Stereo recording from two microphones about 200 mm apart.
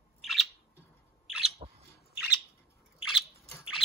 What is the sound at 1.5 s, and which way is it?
Bird, 30° right (ahead or behind).